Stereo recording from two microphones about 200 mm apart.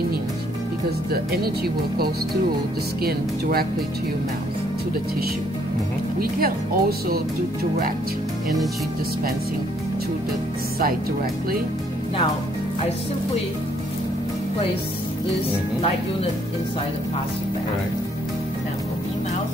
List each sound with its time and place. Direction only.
1.1 s speech: 50° right (ahead or behind)
6.1 s speech: 50° right (ahead or behind)